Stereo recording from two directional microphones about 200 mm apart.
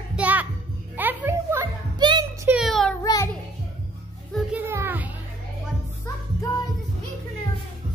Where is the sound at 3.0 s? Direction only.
20° left (ahead or behind).